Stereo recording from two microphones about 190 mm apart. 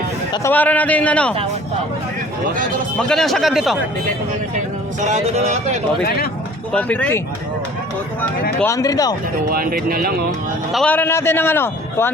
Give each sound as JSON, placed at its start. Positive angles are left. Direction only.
{"t": 0.4, "sound": "a man's voice", "side_deg": 10}
{"t": 3.0, "sound": "speech", "side_deg": 5}
{"t": 4.5, "sound": "speech", "side_deg": -40}
{"t": 6.7, "sound": "a man's voice", "side_deg": 10}
{"t": 8.6, "sound": "speech", "side_deg": 20}
{"t": 9.5, "sound": "speech", "side_deg": -50}
{"t": 10.7, "sound": "a man's voice", "side_deg": 5}